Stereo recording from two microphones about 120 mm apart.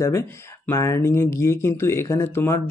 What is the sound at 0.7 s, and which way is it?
Speech, 20° left (ahead or behind).